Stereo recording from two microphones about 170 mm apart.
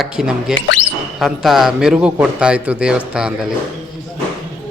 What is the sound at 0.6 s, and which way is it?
Speech, 90° left.